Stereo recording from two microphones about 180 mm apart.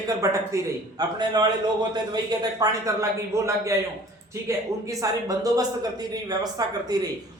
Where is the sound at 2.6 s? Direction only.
20° right (ahead or behind).